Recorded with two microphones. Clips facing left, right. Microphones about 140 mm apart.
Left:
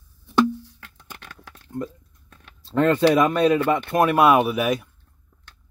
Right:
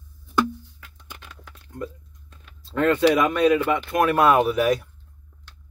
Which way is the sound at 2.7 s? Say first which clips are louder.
Left 1 dB; 30° left (ahead or behind).